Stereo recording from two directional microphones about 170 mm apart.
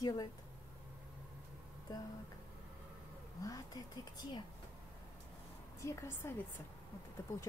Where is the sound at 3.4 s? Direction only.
20° left (ahead or behind).